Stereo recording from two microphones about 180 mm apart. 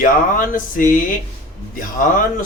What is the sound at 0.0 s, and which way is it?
Speech, 45° left (ahead or behind).